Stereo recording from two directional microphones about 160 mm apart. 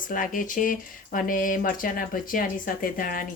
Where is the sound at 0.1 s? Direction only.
55° left (ahead or behind).